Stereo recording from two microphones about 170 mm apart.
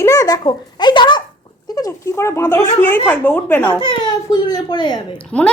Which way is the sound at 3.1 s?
10° left (ahead or behind).